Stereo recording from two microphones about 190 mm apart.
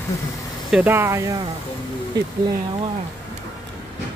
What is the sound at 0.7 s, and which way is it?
Speech, 10° right (ahead or behind).